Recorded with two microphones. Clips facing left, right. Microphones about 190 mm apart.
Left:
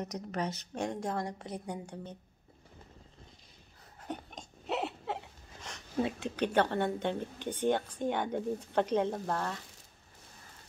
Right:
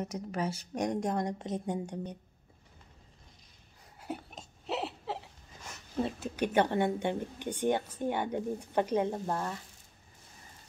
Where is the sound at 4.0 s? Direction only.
5° right (ahead or behind).